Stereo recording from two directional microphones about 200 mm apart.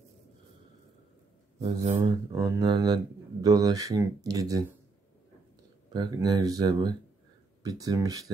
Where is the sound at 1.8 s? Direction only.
30° right (ahead or behind).